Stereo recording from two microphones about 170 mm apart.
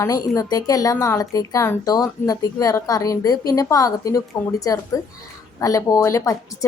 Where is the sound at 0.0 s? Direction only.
20° left (ahead or behind).